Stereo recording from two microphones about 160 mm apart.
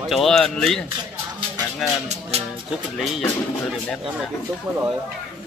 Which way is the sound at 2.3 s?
40° right (ahead or behind).